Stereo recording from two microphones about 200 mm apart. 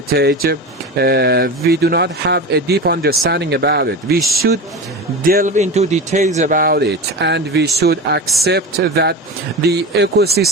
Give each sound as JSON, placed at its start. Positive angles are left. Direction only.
{"t": 0.1, "sound": "speech", "side_deg": -50}
{"t": 5.2, "sound": "speech", "side_deg": -45}